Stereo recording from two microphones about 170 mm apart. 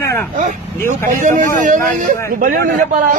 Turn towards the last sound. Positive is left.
turn(degrees=-55)  # may be behind; listen again after turning